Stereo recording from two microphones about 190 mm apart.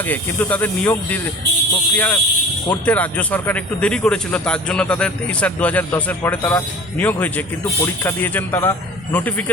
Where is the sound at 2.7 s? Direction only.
10° left (ahead or behind).